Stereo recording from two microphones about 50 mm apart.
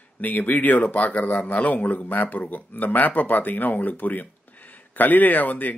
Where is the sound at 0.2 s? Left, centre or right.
Left.